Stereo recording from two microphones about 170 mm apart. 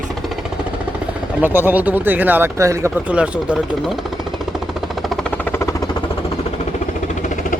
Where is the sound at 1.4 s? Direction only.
10° right (ahead or behind).